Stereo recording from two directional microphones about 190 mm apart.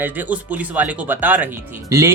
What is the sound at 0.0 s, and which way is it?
Speech, 10° right (ahead or behind).